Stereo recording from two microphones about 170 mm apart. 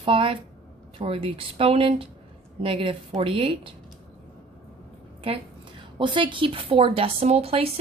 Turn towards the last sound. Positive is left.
turn(degrees=-35)  # may be behind; listen again after turning